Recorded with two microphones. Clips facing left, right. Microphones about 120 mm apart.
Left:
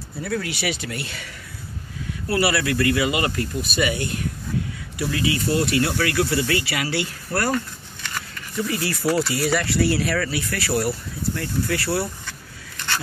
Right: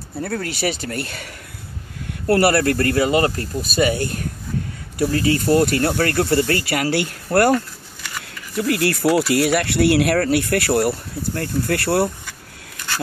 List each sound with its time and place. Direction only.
0.2 s speech: 45° right (ahead or behind); by 7.5 s 60° right (ahead or behind)
8.5 s speech: 65° right (ahead or behind)
12.3 s a sound: 10° right (ahead or behind)